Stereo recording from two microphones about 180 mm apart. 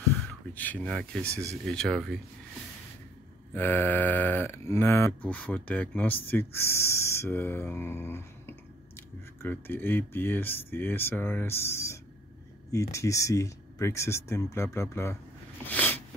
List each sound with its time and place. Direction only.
0.6 s speech: 10° left (ahead or behind)
1.3 s speech: 15° right (ahead or behind)
1.7 s speech: 5° left (ahead or behind)
3.5 s speech: 10° left (ahead or behind)
15.6 s a sound: 10° left (ahead or behind)